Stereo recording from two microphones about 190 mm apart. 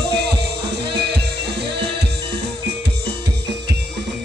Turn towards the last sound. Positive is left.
turn(degrees=-60)  # may be behind; listen again after turning